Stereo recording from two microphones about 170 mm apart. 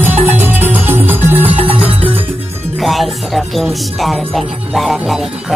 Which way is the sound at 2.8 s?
Centre (ahead or behind).